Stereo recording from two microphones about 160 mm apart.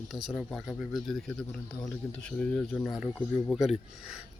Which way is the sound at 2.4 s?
5° left (ahead or behind).